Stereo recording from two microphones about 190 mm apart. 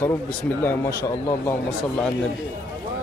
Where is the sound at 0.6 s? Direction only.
15° left (ahead or behind).